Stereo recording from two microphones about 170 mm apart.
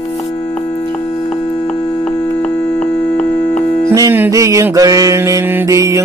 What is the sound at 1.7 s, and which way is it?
Music, 30° left (ahead or behind).